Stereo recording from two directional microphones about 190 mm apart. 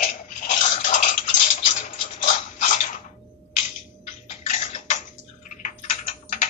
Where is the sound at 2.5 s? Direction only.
40° left (ahead or behind).